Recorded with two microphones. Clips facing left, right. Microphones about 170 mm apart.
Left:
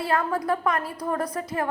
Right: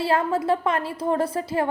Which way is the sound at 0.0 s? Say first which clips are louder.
Right 3 dB; 25° right (ahead or behind).